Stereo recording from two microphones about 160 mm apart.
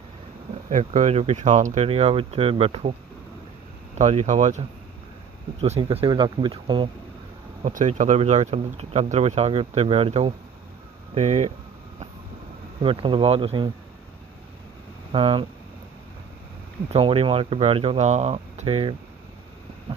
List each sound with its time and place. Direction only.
0.7 s speech: 50° right (ahead or behind)
3.9 s speech: 45° right (ahead or behind)
7.6 s speech: 50° right (ahead or behind)
12.8 s speech: 35° right (ahead or behind)
15.1 s speech: 35° right (ahead or behind)
16.9 s speech: 35° right (ahead or behind)